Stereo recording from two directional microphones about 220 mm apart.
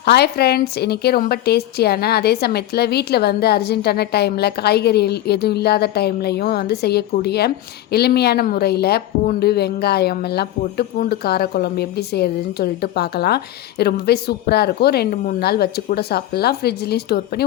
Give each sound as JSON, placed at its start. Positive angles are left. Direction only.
{"t": 0.0, "sound": "a woman's voice", "side_deg": 45}